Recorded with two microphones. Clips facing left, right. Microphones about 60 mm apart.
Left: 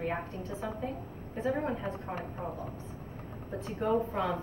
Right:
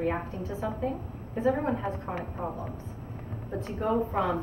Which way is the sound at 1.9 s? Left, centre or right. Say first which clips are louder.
Right 4 dB; right.